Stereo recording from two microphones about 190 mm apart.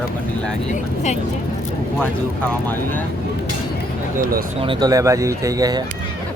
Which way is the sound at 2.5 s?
10° left (ahead or behind).